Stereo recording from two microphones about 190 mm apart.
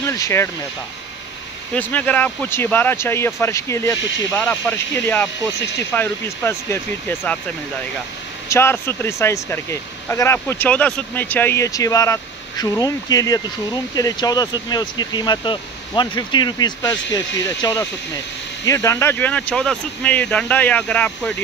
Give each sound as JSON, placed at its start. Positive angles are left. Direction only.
{"t": 0.0, "sound": "speech", "side_deg": 15}
{"t": 1.8, "sound": "speech", "side_deg": 10}
{"t": 8.5, "sound": "speech", "side_deg": 10}